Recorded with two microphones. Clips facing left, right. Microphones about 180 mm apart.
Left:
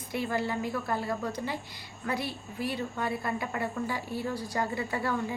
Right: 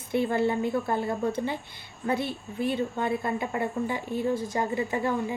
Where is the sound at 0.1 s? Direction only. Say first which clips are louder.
Right 6 dB; 25° right (ahead or behind).